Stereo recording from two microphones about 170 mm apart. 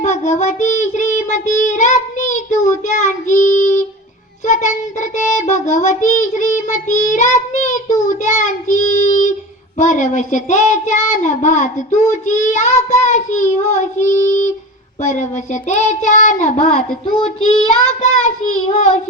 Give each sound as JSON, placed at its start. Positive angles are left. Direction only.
{"t": 0.0, "sound": "child singing", "side_deg": 40}
{"t": 15.7, "sound": "child singing", "side_deg": 50}
{"t": 17.2, "sound": "child singing", "side_deg": 35}